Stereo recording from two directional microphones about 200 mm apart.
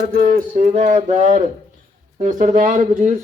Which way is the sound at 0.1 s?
40° right (ahead or behind).